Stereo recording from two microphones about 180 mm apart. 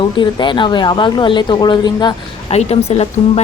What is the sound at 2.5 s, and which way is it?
Speech, 35° left (ahead or behind).